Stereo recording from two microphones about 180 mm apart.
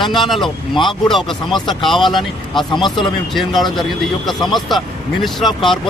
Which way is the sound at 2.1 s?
25° left (ahead or behind).